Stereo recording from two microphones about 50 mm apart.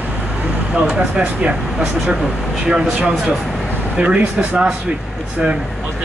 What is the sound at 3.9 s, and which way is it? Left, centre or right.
Speech, right.